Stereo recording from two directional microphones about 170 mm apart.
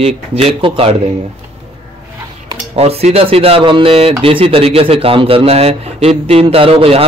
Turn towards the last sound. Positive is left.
turn(degrees=-35)  # may be behind; listen again after turning